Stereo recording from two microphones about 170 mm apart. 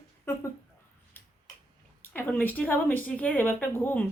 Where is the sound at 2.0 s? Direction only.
10° left (ahead or behind).